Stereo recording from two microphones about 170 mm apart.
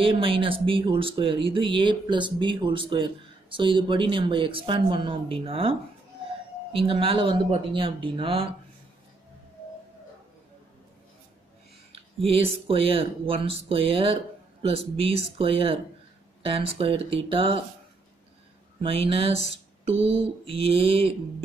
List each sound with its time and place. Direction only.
0.0 s speech: 30° right (ahead or behind)
11.9 s speech: 35° right (ahead or behind)
18.8 s speech: 30° right (ahead or behind)